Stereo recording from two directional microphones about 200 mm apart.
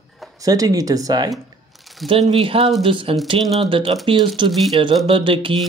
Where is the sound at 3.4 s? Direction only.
Centre (ahead or behind).